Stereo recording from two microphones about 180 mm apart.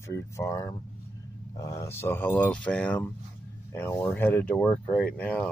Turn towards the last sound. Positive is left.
turn(degrees=5)  # may be behind; listen again after turning